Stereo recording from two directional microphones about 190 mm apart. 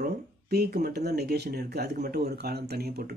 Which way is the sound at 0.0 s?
55° right (ahead or behind).